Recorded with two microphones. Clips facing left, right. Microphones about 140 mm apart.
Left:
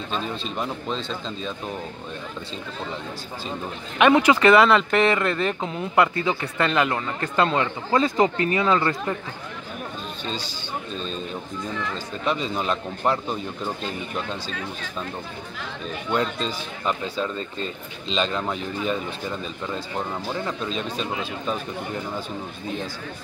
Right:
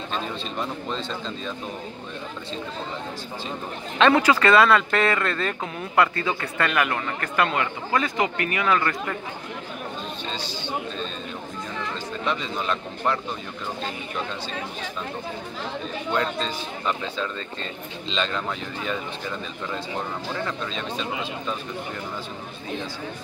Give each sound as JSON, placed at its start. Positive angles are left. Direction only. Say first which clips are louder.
{"t": 4.0, "sound": "speech", "louder": "left 2 dB", "side_deg": 20}
{"t": 12.5, "sound": "speech", "louder": "left 2 dB", "side_deg": 20}
{"t": 16.1, "sound": "speech", "louder": "left 1 dB", "side_deg": 20}
{"t": 18.1, "sound": "speech", "louder": "left 3 dB", "side_deg": 10}